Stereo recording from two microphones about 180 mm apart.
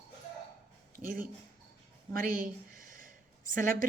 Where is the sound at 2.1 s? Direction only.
50° right (ahead or behind).